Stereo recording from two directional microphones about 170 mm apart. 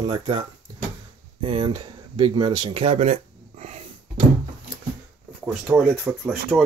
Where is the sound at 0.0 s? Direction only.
30° right (ahead or behind); by 3.8 s 45° right (ahead or behind).